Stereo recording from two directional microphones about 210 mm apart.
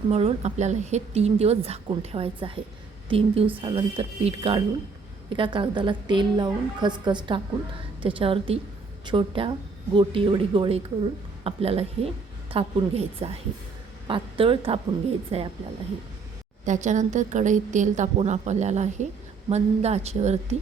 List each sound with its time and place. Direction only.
0.1 s speech: 30° right (ahead or behind)
16.6 s a woman's voice: 35° right (ahead or behind)